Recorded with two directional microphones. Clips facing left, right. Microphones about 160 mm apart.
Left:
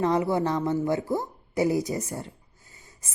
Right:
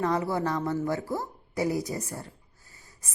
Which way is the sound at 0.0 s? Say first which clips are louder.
Left 3 dB; 20° left (ahead or behind).